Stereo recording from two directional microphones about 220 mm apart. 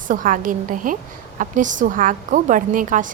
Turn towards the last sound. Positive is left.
turn(degrees=-35)  # may be behind; listen again after turning